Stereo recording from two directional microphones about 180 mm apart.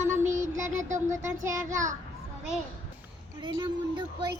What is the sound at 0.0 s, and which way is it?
Child singing, 15° right (ahead or behind).